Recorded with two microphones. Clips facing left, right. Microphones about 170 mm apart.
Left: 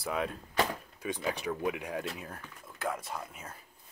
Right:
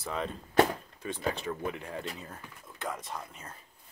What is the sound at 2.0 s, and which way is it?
Speech, 5° left (ahead or behind).